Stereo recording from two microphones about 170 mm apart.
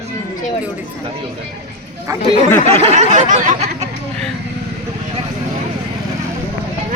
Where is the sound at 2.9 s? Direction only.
50° right (ahead or behind).